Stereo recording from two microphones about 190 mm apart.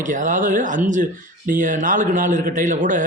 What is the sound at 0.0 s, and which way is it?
Speech, 45° right (ahead or behind).